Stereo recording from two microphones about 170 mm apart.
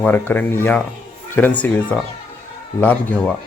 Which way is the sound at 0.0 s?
10° left (ahead or behind).